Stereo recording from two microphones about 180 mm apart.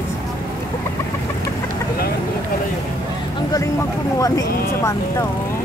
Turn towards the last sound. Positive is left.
turn(degrees=20)  # may be behind; listen again after turning